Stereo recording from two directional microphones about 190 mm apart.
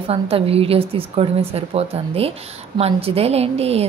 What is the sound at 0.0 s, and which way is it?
A woman's voice, 30° right (ahead or behind).